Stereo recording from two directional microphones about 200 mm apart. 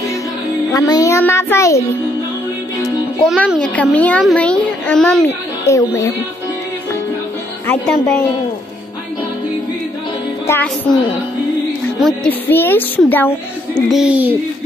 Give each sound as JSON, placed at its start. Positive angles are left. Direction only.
{"t": 0.7, "sound": "a woman's voice", "side_deg": 20}
{"t": 3.3, "sound": "a woman's voice", "side_deg": 5}
{"t": 5.7, "sound": "a woman's voice", "side_deg": 15}
{"t": 7.6, "sound": "a child's voice", "side_deg": 5}
{"t": 10.4, "sound": "a woman's voice", "side_deg": 10}
{"t": 12.0, "sound": "a woman's voice", "side_deg": 0}